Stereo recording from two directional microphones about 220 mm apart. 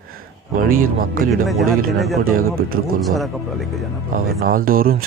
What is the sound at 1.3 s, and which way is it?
Speech, centre (ahead or behind).